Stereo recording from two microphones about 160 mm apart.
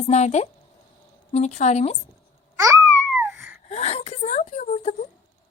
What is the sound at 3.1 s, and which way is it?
Wheeze, 15° right (ahead or behind).